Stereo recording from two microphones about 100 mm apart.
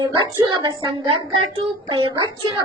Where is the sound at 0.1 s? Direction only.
50° right (ahead or behind).